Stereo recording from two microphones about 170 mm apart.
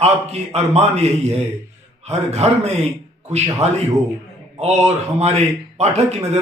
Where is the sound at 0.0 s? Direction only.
40° right (ahead or behind).